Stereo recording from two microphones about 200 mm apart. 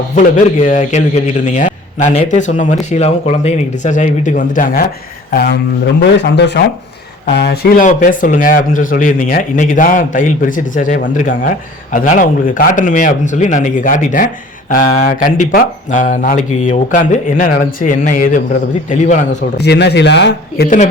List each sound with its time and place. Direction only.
0.6 s speech: 40° left (ahead or behind)
5.3 s a man's voice: 55° left (ahead or behind)
7.9 s speech: 40° left (ahead or behind)
19.5 s a man's voice: 55° left (ahead or behind)